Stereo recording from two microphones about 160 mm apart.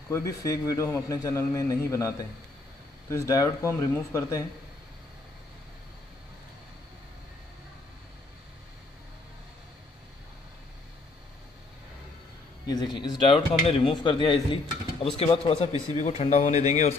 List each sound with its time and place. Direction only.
0.1 s a man's voice: 20° left (ahead or behind)
12.6 s a man's voice: 25° left (ahead or behind); by 16.9 s 45° left (ahead or behind)